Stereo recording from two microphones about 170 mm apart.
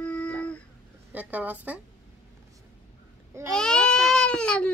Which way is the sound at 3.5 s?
5° left (ahead or behind).